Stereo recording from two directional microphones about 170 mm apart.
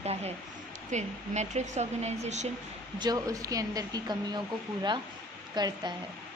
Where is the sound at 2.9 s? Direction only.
25° right (ahead or behind).